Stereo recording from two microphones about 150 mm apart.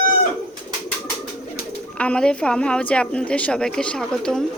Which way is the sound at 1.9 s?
5° left (ahead or behind).